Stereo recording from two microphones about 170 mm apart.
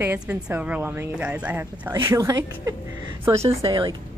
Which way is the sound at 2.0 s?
20° right (ahead or behind).